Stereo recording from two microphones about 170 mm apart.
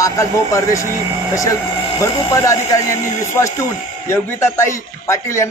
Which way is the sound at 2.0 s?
20° left (ahead or behind).